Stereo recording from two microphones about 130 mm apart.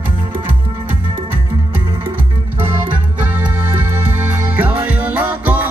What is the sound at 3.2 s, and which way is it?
Music, 15° right (ahead or behind).